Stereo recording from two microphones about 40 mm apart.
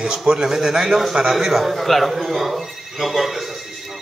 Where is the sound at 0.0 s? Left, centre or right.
Centre.